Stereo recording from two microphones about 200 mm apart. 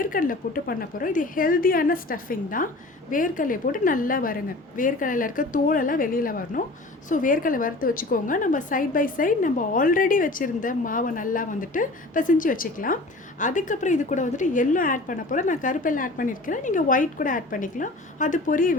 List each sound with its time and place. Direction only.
0.0 s a woman's voice: 45° left (ahead or behind)